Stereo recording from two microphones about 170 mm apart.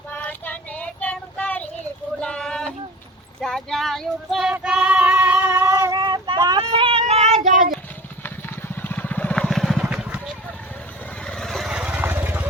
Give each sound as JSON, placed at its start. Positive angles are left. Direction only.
{"t": 0.1, "sound": "child singing", "side_deg": 10}
{"t": 2.2, "sound": "a sound", "side_deg": 5}
{"t": 3.4, "sound": "child singing", "side_deg": 0}
{"t": 4.5, "sound": "female singing", "side_deg": -5}
{"t": 5.5, "sound": "child singing", "side_deg": -20}
{"t": 6.7, "sound": "cat", "side_deg": -30}
{"t": 8.7, "sound": "vehicle", "side_deg": 10}